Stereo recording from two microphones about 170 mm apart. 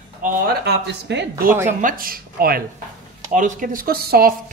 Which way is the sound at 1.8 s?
55° right (ahead or behind).